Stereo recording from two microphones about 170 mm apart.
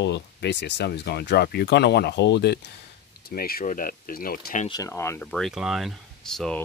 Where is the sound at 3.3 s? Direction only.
60° left (ahead or behind).